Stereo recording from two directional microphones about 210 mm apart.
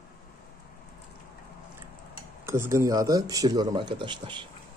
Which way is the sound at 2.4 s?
10° right (ahead or behind).